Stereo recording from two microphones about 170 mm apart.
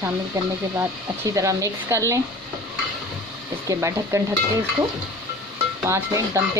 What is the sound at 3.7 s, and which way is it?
Speech, 20° right (ahead or behind).